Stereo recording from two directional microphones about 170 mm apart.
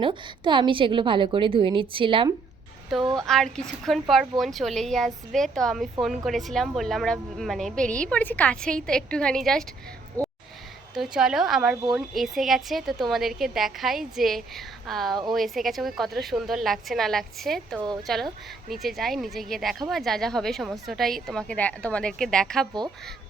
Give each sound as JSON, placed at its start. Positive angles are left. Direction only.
{"t": 0.0, "sound": "a woman's voice", "side_deg": -30}
{"t": 3.2, "sound": "a woman's voice", "side_deg": 0}
{"t": 10.2, "sound": "a sound", "side_deg": 10}
{"t": 10.9, "sound": "a woman's voice", "side_deg": 0}